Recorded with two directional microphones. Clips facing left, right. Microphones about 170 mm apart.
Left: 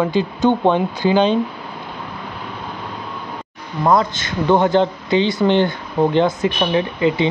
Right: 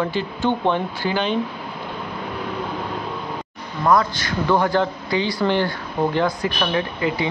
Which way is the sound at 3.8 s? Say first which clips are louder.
Left 2 dB; 25° left (ahead or behind).